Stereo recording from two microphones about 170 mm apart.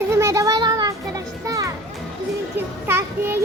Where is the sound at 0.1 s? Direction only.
15° right (ahead or behind).